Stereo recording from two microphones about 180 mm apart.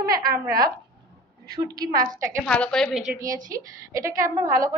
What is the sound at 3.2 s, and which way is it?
A woman's voice, 20° right (ahead or behind).